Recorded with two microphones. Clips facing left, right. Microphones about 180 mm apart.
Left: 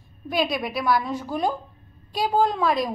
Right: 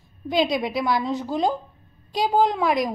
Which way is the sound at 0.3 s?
20° right (ahead or behind).